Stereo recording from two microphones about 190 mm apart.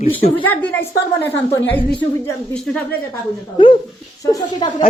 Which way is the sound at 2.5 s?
5° left (ahead or behind).